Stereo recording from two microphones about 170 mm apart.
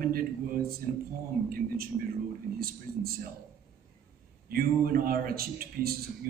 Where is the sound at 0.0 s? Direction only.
60° right (ahead or behind).